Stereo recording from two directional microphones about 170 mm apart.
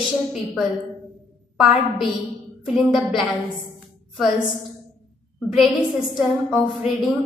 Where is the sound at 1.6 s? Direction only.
5° right (ahead or behind).